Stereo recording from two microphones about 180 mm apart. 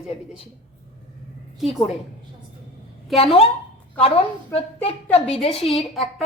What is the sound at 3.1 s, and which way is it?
A woman's voice, 30° left (ahead or behind).